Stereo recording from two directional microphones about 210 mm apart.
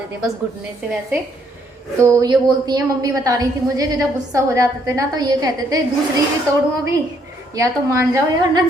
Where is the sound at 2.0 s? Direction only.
15° right (ahead or behind).